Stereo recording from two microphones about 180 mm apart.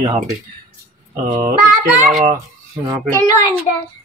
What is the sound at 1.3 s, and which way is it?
Speech, 15° right (ahead or behind).